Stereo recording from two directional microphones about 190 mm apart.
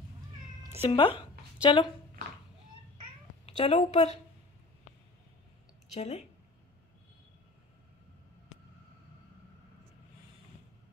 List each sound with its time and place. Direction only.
0.7 s speech: 30° left (ahead or behind)
3.4 s a woman's voice: 30° left (ahead or behind)
5.9 s speech: 35° left (ahead or behind)